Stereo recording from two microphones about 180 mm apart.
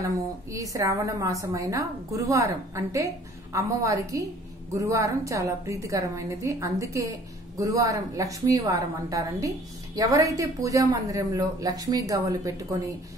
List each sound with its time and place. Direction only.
0.0 s a woman's voice: 20° right (ahead or behind)